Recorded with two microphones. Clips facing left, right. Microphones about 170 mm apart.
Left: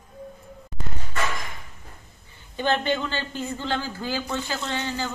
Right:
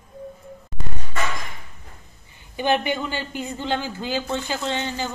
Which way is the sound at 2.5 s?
15° right (ahead or behind).